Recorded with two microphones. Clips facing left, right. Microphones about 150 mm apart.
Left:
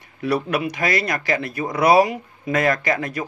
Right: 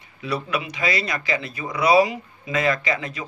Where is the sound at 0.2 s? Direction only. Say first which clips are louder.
Left 5 dB; 55° left (ahead or behind).